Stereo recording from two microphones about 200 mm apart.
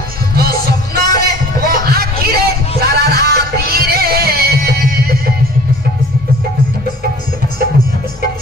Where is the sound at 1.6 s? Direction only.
50° right (ahead or behind).